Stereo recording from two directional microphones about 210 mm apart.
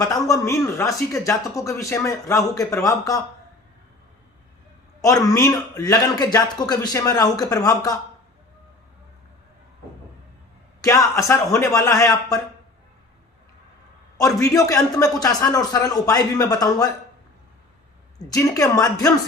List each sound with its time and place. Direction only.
0.0 s speech: 15° left (ahead or behind)
5.3 s speech: 15° left (ahead or behind)
10.8 s speech: 15° left (ahead or behind)
14.2 s speech: 15° left (ahead or behind)
18.3 s speech: 15° left (ahead or behind)